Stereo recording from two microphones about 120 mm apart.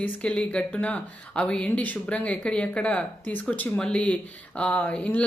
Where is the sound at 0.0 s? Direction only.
10° left (ahead or behind).